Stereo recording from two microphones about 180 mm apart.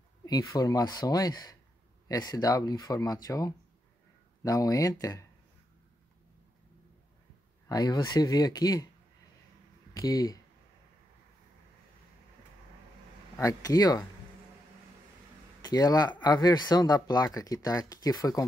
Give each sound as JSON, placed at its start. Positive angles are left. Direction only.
{"t": 0.2, "sound": "speech", "side_deg": 20}
{"t": 7.6, "sound": "speech", "side_deg": 20}
{"t": 9.9, "sound": "speech", "side_deg": 20}
{"t": 13.4, "sound": "speech", "side_deg": 20}
{"t": 15.6, "sound": "speech", "side_deg": 20}